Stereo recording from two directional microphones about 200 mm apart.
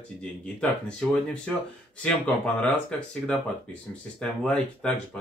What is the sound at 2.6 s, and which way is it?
A man's voice, 5° left (ahead or behind).